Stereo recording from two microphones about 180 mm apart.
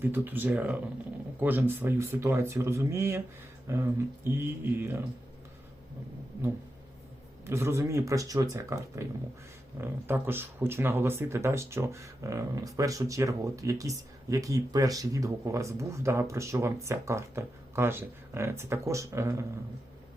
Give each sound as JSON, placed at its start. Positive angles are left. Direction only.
{"t": 0.0, "sound": "speech", "side_deg": -10}
{"t": 7.4, "sound": "speech", "side_deg": -15}